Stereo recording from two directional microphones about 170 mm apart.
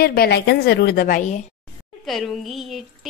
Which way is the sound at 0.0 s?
65° left (ahead or behind).